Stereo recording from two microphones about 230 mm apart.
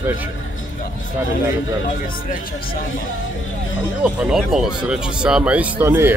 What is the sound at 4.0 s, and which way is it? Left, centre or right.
Speech, centre.